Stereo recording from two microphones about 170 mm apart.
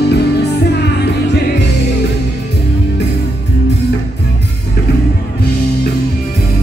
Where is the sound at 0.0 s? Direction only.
75° left (ahead or behind).